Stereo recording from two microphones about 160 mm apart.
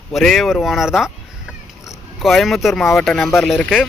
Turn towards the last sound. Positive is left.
turn(degrees=0)  # may be behind; listen again after turning